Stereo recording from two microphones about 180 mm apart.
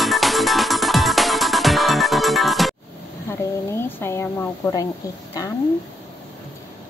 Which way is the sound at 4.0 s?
15° left (ahead or behind).